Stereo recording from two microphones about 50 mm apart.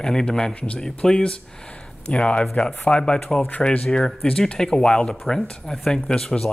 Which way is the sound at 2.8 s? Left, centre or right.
Left.